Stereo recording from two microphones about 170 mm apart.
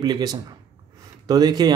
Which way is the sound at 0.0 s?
20° right (ahead or behind).